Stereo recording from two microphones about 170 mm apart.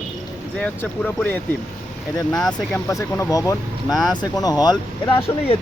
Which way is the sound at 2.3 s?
5° left (ahead or behind).